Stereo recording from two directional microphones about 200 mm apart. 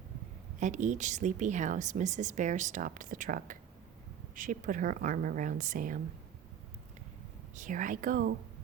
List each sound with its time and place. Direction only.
0.6 s a woman's voice: 35° right (ahead or behind)
7.5 s a woman's voice: 40° right (ahead or behind)